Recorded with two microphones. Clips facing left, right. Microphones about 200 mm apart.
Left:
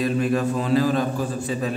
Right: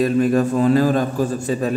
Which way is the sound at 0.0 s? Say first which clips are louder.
Right 5 dB; 45° right (ahead or behind).